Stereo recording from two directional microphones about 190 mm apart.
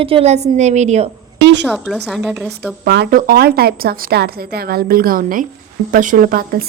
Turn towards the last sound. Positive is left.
turn(degrees=-50)  # may be behind; listen again after turning